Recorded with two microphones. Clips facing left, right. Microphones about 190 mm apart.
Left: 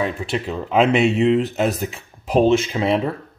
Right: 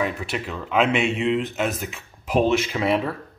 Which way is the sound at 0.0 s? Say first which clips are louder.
Left 3 dB; 25° left (ahead or behind).